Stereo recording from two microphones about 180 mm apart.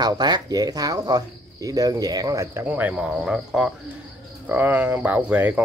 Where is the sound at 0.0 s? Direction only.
20° right (ahead or behind).